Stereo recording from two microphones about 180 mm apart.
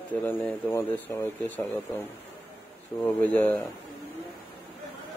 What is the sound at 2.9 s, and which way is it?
Speech, 30° left (ahead or behind).